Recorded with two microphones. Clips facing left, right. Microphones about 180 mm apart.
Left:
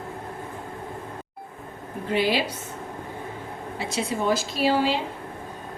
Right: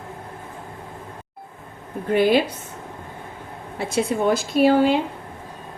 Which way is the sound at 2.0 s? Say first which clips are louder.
Right 6 dB; 50° right (ahead or behind).